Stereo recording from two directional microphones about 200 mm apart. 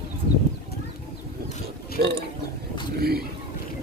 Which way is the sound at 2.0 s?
55° right (ahead or behind).